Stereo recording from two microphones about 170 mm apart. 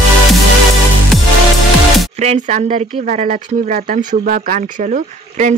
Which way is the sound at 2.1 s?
40° right (ahead or behind).